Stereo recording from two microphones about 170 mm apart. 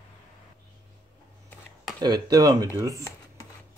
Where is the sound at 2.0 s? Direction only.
25° right (ahead or behind).